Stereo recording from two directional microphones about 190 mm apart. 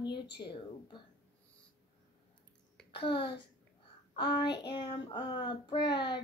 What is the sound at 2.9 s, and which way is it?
Speech, 25° left (ahead or behind).